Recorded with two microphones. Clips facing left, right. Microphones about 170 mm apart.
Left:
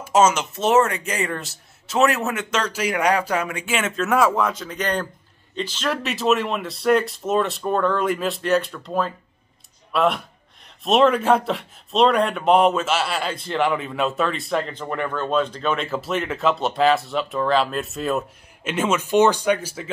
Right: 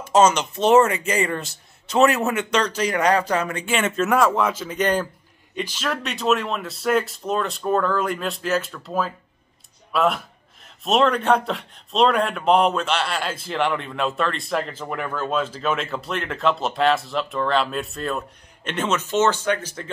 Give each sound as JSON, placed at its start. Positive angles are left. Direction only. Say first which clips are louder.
{"t": 0.0, "sound": "speech", "louder": "right 1 dB", "side_deg": 5}
{"t": 5.9, "sound": "speech", "louder": "left 2 dB", "side_deg": 0}